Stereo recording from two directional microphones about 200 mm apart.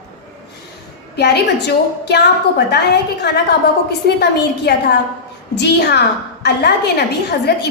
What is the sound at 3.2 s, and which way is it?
A woman's voice, 55° left (ahead or behind).